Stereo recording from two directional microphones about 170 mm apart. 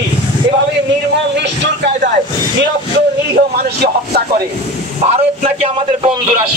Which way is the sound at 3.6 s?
70° right (ahead or behind).